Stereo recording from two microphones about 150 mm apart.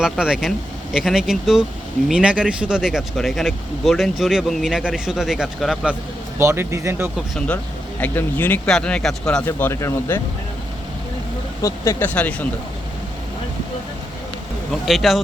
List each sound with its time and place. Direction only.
0.0 s speech: 5° right (ahead or behind)
6.4 s speech: 20° right (ahead or behind)
7.3 s speech: 10° left (ahead or behind)
9.5 s speech: 15° left (ahead or behind)
11.6 s speech: 15° left (ahead or behind)
14.7 s speech: centre (ahead or behind)